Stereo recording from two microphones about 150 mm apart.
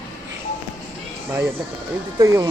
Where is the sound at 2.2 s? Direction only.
20° right (ahead or behind).